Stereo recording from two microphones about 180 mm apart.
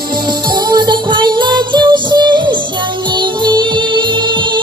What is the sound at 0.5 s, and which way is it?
Music, 25° right (ahead or behind).